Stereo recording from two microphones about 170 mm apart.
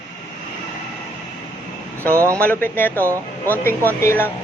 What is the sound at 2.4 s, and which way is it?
A man's voice, 10° left (ahead or behind).